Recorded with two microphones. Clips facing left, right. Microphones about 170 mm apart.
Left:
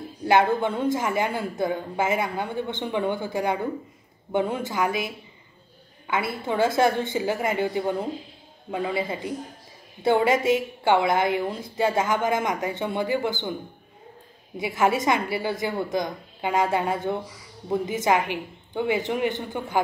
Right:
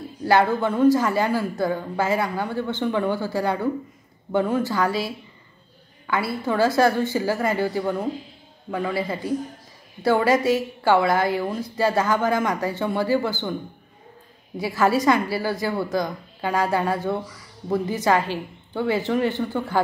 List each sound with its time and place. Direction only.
0.3 s a woman's voice: 20° left (ahead or behind)
14.6 s a woman's voice: 20° left (ahead or behind)